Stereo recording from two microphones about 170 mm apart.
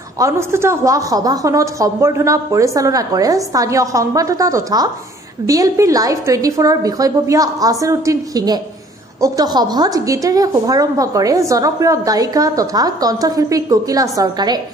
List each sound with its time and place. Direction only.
0.2 s a woman's voice: 15° right (ahead or behind)